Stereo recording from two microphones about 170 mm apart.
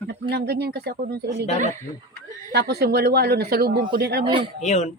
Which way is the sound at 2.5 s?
70° right (ahead or behind).